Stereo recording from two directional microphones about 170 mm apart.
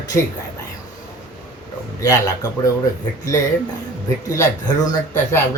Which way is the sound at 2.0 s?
20° left (ahead or behind).